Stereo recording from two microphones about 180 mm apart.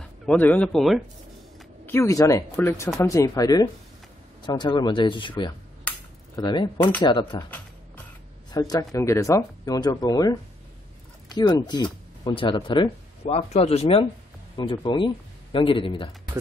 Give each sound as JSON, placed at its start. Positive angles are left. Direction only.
{"t": 0.0, "sound": "speech", "side_deg": 5}
{"t": 1.9, "sound": "speech", "side_deg": 15}
{"t": 8.5, "sound": "speech", "side_deg": 20}